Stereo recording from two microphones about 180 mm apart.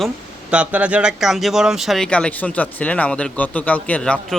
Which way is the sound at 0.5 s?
5° right (ahead or behind).